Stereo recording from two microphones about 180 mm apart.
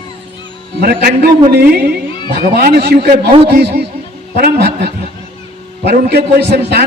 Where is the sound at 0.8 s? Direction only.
60° right (ahead or behind).